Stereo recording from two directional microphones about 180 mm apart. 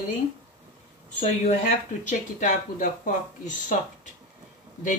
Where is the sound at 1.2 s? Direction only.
40° left (ahead or behind).